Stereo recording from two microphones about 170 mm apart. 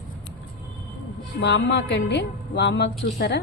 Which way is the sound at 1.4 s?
90° left.